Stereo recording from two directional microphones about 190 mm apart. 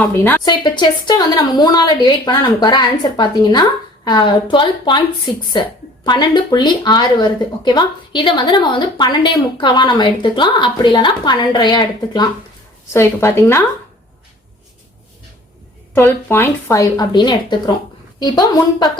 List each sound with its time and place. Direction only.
0.0 s a woman's voice: 10° left (ahead or behind)
0.4 s speech: 20° left (ahead or behind)
6.1 s a woman's voice: 25° left (ahead or behind)
16.0 s a woman's voice: 10° left (ahead or behind)